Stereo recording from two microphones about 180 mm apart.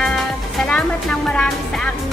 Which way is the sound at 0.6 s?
Centre (ahead or behind).